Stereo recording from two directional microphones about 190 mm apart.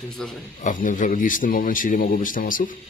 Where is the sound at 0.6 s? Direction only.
45° left (ahead or behind).